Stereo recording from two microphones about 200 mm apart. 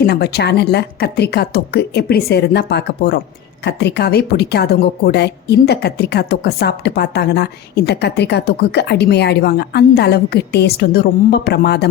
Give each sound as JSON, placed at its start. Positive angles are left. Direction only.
{"t": 0.0, "sound": "a woman's voice", "side_deg": 55}